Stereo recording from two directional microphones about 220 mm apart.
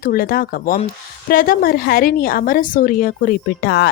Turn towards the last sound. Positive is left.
turn(degrees=45)  # may be behind; listen again after turning